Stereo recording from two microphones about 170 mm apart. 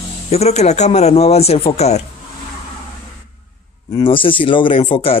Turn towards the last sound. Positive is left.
turn(degrees=30)  # may be behind; listen again after turning